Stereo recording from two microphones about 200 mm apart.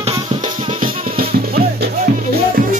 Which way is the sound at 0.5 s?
25° right (ahead or behind).